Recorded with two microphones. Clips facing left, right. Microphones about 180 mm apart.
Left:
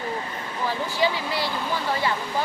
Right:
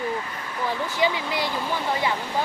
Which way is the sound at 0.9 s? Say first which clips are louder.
Even; 20° right (ahead or behind).